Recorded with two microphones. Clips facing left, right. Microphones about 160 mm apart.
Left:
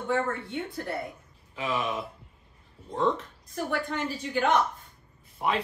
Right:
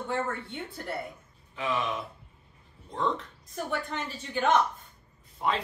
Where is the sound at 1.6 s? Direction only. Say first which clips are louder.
Even; 10° left (ahead or behind).